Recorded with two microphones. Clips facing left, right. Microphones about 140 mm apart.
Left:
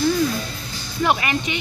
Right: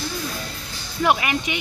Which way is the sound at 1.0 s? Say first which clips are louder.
Even; 10° right (ahead or behind).